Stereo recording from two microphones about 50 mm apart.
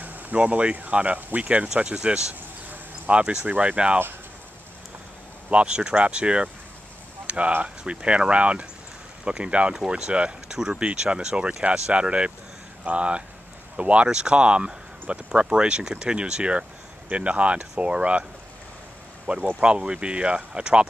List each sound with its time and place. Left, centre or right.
0.0 s speech: right
5.5 s speech: right
19.3 s speech: right